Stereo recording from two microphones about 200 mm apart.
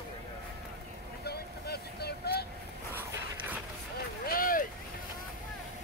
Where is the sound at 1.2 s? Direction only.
55° left (ahead or behind).